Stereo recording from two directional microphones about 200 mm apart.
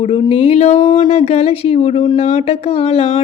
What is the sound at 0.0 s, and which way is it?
Speech, 30° left (ahead or behind).